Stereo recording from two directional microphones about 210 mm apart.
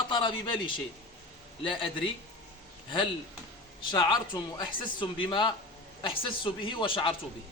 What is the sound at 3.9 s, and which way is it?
A man's voice, 20° left (ahead or behind).